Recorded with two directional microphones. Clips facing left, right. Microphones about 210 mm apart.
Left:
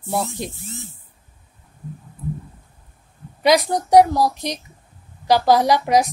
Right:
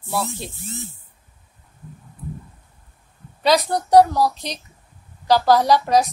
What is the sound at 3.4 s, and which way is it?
Speech, 15° left (ahead or behind).